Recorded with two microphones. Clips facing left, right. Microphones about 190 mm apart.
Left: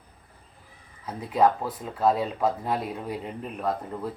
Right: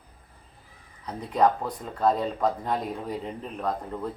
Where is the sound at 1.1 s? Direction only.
5° left (ahead or behind).